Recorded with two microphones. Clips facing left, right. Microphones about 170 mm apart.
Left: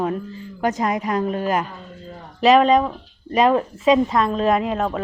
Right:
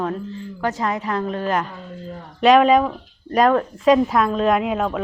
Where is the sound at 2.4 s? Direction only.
Centre (ahead or behind).